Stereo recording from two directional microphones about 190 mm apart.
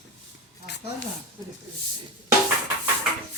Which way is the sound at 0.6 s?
65° left (ahead or behind).